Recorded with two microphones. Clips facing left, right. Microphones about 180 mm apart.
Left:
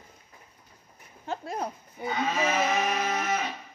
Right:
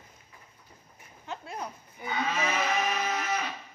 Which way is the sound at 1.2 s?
40° left (ahead or behind).